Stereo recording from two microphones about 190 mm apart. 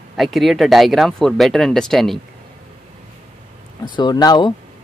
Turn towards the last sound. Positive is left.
turn(degrees=20)  # may be behind; listen again after turning